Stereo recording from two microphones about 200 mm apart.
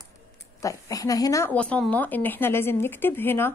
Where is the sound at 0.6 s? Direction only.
15° left (ahead or behind).